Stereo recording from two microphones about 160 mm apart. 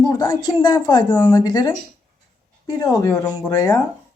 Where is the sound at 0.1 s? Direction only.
25° left (ahead or behind).